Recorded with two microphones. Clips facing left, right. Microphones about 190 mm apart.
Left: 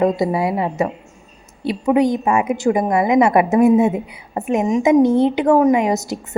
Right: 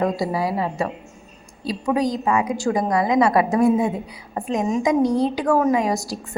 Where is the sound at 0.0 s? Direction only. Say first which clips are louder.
Left 5 dB; 20° left (ahead or behind).